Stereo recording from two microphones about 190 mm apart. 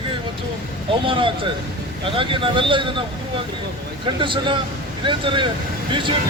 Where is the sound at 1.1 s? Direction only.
25° right (ahead or behind).